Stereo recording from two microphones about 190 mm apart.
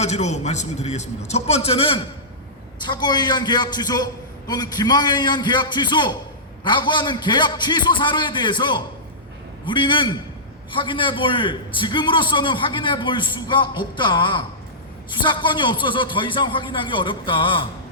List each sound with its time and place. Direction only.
0.0 s a man's voice: 35° left (ahead or behind)